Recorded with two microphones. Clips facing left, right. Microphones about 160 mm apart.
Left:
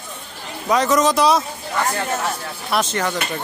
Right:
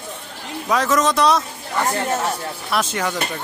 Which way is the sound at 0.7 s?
Centre (ahead or behind).